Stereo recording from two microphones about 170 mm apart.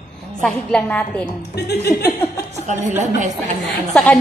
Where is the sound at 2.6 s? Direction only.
45° right (ahead or behind).